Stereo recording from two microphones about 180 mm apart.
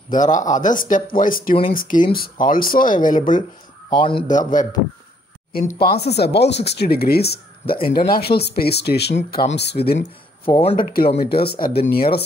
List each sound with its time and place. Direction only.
0.1 s speech: 45° left (ahead or behind)
3.9 s speech: 30° left (ahead or behind)
4.3 s speech: 45° left (ahead or behind)